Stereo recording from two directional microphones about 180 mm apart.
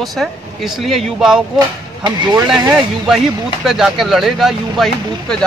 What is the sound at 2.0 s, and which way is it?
Speech, 25° right (ahead or behind).